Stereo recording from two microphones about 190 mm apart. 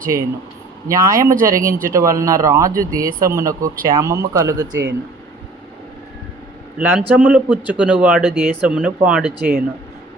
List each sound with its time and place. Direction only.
0.0 s speech: 45° right (ahead or behind)
0.9 s speech: 20° right (ahead or behind)
1.1 s speech: 45° right (ahead or behind)
1.9 s speech: 15° right (ahead or behind)
6.7 s speech: 5° right (ahead or behind)